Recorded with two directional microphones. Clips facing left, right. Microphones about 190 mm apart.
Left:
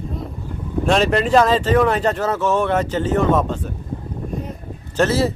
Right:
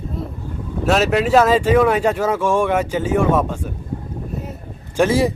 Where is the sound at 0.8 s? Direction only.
5° right (ahead or behind).